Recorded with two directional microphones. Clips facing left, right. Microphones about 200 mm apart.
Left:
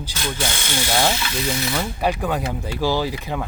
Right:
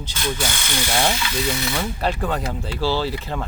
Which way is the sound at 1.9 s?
10° left (ahead or behind).